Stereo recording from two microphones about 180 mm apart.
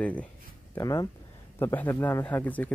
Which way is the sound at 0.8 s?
20° left (ahead or behind).